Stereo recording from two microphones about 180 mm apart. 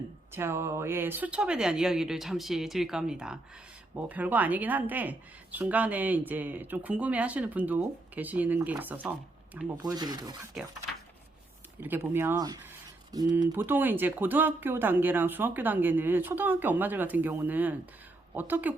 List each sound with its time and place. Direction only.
0.3 s speech: 15° right (ahead or behind)
9.8 s speech: 20° right (ahead or behind)
11.8 s speech: 10° right (ahead or behind)